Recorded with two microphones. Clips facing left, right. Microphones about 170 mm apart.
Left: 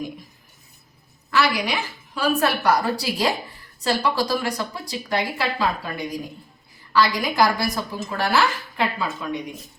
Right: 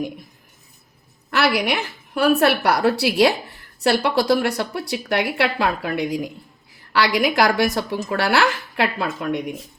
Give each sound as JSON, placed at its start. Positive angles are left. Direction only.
{"t": 1.3, "sound": "speech", "side_deg": -65}